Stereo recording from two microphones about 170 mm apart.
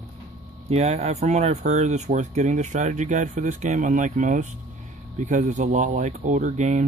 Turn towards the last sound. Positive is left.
turn(degrees=-50)  # may be behind; listen again after turning